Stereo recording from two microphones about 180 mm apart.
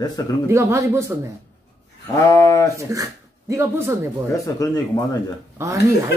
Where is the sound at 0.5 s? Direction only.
15° right (ahead or behind).